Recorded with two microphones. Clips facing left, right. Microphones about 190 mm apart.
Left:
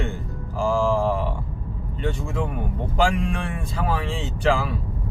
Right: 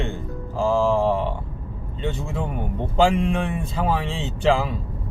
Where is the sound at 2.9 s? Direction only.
20° right (ahead or behind).